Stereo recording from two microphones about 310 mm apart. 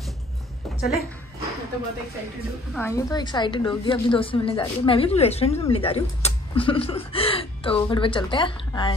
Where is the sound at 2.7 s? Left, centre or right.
Centre.